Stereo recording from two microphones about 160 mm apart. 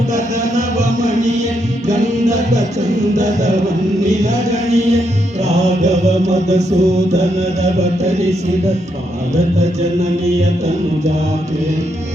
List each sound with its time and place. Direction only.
0.1 s music: 45° right (ahead or behind)
4.0 s chant: 45° right (ahead or behind)